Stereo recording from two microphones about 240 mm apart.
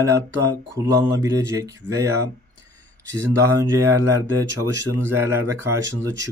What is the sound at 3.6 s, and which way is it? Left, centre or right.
Mantra, centre.